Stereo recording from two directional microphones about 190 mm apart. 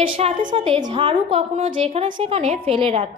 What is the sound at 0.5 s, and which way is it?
A woman's voice, 25° right (ahead or behind).